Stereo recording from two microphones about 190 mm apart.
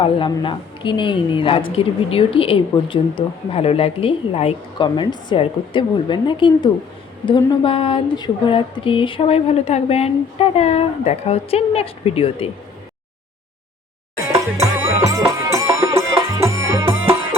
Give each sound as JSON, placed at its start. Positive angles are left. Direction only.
{"t": 0.0, "sound": "a woman's voice", "side_deg": 25}
{"t": 14.3, "sound": "music", "side_deg": -15}